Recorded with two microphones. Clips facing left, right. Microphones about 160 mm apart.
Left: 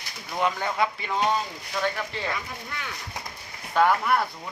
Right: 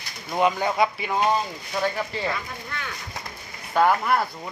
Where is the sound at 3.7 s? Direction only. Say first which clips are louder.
Right 1 dB; 10° right (ahead or behind).